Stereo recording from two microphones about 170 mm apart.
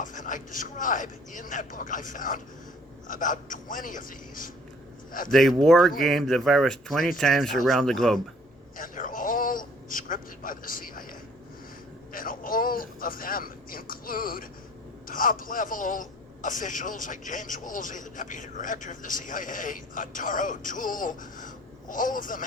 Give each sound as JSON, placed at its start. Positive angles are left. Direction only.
{"t": 0.0, "sound": "a man's voice", "side_deg": 50}
{"t": 5.3, "sound": "speech", "side_deg": 0}
{"t": 8.8, "sound": "a sound", "side_deg": 50}
{"t": 12.1, "sound": "a man's voice", "side_deg": 55}